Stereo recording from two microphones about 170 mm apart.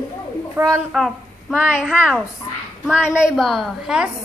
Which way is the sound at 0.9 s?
Centre (ahead or behind).